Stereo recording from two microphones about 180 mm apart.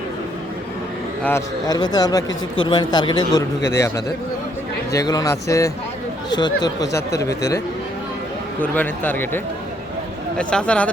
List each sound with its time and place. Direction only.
1.2 s speech: 15° left (ahead or behind)
8.6 s speech: 10° left (ahead or behind)